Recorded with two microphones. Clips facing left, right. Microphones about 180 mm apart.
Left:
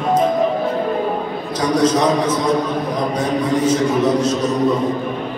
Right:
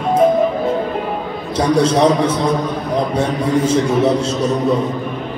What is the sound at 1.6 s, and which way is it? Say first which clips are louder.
A man's voice: right 3 dB; 30° right (ahead or behind).